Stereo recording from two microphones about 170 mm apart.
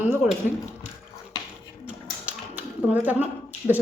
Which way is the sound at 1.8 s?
10° right (ahead or behind).